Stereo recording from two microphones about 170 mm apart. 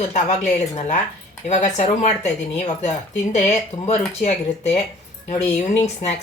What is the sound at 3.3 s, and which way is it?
Speech, 45° left (ahead or behind).